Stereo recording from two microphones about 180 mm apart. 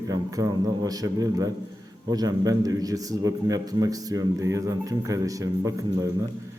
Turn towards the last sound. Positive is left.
turn(degrees=-20)  # may be behind; listen again after turning